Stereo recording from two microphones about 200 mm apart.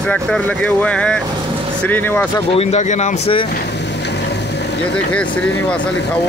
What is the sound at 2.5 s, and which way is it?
Speech, 30° left (ahead or behind).